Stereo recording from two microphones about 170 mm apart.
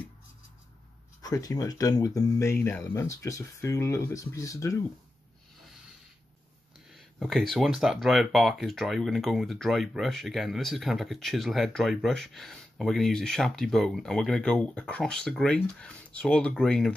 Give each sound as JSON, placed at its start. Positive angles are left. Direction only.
{"t": 1.2, "sound": "speech", "side_deg": 20}
{"t": 6.9, "sound": "speech", "side_deg": 0}